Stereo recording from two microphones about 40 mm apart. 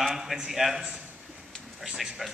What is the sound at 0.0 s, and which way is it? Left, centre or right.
Speech, centre.